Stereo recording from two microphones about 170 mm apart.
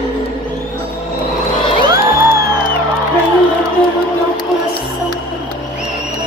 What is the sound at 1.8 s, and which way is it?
Music, 20° right (ahead or behind).